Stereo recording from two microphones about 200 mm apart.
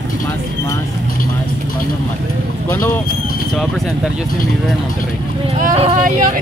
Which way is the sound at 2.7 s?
10° left (ahead or behind).